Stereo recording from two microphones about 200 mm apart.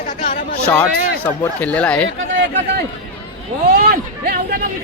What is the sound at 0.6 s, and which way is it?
A man's voice, 5° left (ahead or behind).